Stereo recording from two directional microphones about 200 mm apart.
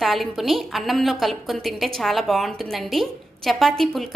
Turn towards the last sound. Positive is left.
turn(degrees=0)  # may be behind; listen again after turning